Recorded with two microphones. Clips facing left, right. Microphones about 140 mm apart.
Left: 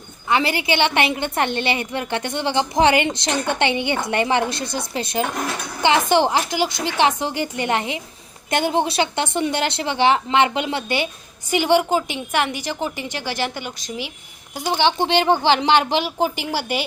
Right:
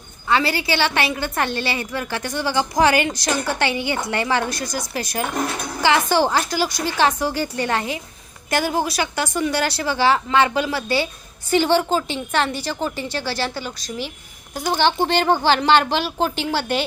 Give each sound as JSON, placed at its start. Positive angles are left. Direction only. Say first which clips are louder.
{"t": 0.3, "sound": "a woman's voice", "louder": "even", "side_deg": 20}